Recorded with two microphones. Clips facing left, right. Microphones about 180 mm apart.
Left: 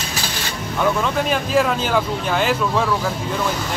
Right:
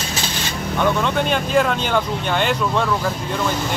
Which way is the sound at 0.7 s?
Centre (ahead or behind).